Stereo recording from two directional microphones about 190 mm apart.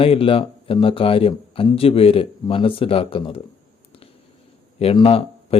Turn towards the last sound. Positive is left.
turn(degrees=30)  # may be behind; listen again after turning